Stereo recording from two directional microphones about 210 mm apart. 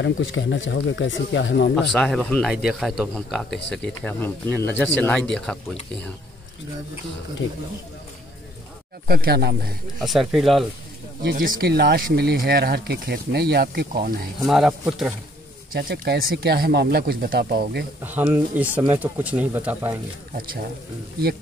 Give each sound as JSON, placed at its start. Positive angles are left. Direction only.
{"t": 0.0, "sound": "speech", "side_deg": 60}
{"t": 1.9, "sound": "a man's voice", "side_deg": 5}
{"t": 3.4, "sound": "speech", "side_deg": 55}
{"t": 3.7, "sound": "speech", "side_deg": 5}
{"t": 9.0, "sound": "speech", "side_deg": -45}
{"t": 10.0, "sound": "a man's voice", "side_deg": 0}
{"t": 11.2, "sound": "speech", "side_deg": -40}
{"t": 14.4, "sound": "a man's voice", "side_deg": 0}
{"t": 15.7, "sound": "speech", "side_deg": -45}
{"t": 18.0, "sound": "speech", "side_deg": -10}